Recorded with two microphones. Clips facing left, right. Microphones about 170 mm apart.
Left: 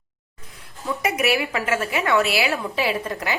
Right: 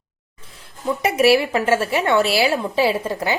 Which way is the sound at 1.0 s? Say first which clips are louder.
Right 7 dB; 30° right (ahead or behind).